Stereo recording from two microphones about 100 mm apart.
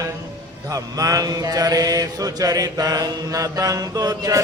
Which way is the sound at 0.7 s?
35° right (ahead or behind).